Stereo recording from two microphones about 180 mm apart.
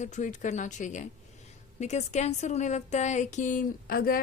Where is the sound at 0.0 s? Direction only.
40° left (ahead or behind).